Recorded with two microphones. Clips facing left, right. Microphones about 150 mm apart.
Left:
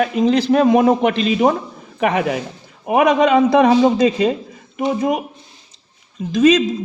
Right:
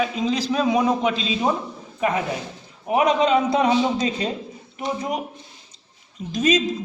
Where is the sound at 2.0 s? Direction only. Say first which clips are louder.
Left 5 dB; 75° left (ahead or behind).